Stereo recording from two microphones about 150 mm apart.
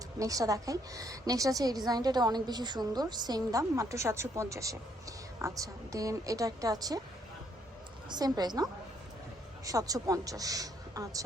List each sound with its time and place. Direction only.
0.2 s a woman's voice: 20° right (ahead or behind)
8.1 s a woman's voice: 30° right (ahead or behind)